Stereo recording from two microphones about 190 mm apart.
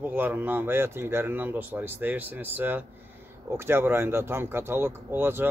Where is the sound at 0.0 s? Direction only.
10° right (ahead or behind).